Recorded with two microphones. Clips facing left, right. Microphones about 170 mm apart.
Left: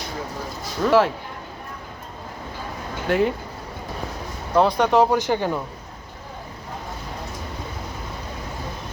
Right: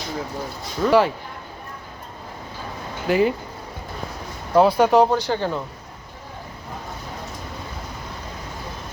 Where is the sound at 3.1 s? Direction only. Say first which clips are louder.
Right 2 dB; centre (ahead or behind).